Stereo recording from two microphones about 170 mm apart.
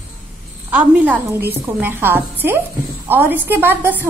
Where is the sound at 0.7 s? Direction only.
10° right (ahead or behind).